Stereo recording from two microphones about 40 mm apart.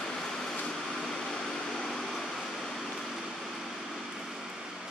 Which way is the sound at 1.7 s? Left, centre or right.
Centre.